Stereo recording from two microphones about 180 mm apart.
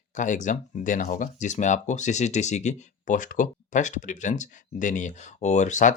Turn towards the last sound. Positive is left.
turn(degrees=45)  # may be behind; listen again after turning